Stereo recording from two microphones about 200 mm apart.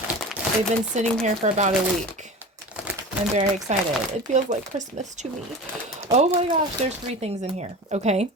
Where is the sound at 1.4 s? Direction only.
35° right (ahead or behind).